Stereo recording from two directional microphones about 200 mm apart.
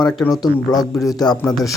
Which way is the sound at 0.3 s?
20° left (ahead or behind).